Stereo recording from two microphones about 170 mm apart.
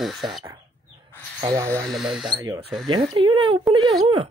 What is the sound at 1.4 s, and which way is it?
Speech, 20° right (ahead or behind).